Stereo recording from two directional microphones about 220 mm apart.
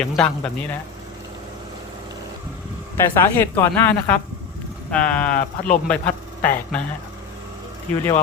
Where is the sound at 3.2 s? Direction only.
10° left (ahead or behind).